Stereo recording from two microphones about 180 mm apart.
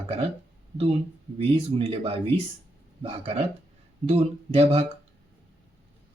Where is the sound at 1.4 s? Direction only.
30° right (ahead or behind).